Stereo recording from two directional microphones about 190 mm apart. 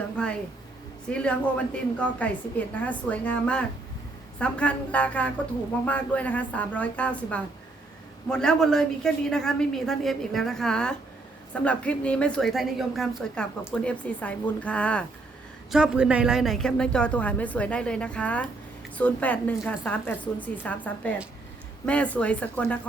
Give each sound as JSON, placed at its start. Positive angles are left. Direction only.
{"t": 0.2, "sound": "a sound", "side_deg": 5}
{"t": 1.1, "sound": "a woman's voice", "side_deg": 5}
{"t": 15.7, "sound": "a woman's voice", "side_deg": -5}